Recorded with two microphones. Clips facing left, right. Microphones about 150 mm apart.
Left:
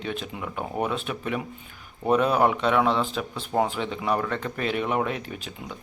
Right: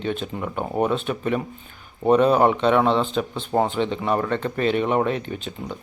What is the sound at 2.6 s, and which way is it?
Speech, centre (ahead or behind).